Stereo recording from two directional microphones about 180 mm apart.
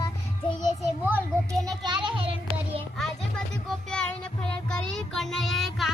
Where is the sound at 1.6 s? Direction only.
25° right (ahead or behind).